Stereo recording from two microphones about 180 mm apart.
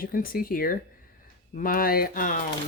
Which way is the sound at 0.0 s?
55° left (ahead or behind).